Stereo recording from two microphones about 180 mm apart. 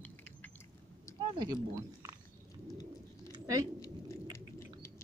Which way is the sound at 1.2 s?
25° right (ahead or behind).